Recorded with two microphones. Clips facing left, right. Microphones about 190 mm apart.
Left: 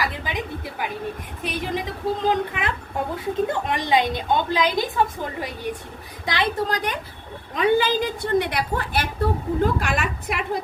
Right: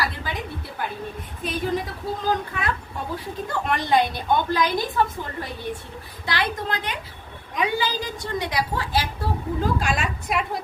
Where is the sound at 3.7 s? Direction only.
20° left (ahead or behind).